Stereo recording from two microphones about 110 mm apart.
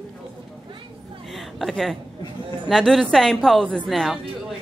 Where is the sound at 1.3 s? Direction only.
Centre (ahead or behind).